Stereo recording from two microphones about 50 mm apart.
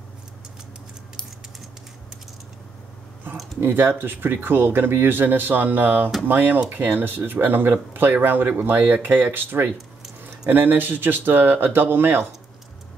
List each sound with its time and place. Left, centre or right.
3.6 s speech: right